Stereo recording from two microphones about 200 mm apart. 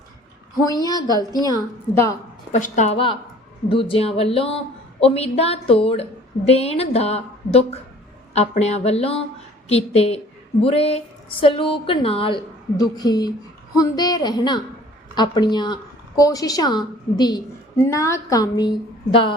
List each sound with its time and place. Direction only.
0.6 s a woman's voice: 20° left (ahead or behind)
2.5 s a woman's voice: 40° left (ahead or behind); by 18.7 s 20° left (ahead or behind)